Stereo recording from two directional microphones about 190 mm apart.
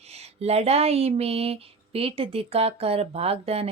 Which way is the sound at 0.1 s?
35° right (ahead or behind).